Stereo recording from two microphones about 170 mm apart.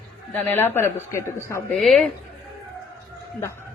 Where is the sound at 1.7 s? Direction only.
Centre (ahead or behind).